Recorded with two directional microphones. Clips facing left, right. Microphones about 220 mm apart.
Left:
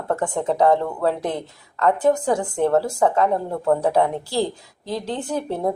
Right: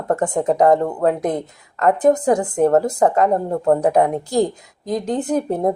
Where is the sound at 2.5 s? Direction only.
40° right (ahead or behind).